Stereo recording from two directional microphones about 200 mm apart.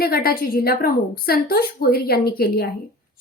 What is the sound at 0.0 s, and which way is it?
A woman's voice, 50° left (ahead or behind).